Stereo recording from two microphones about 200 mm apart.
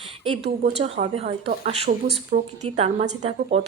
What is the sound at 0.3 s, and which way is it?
Speech, 30° right (ahead or behind).